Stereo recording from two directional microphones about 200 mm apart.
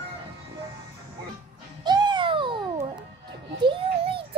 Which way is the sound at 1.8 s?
20° right (ahead or behind).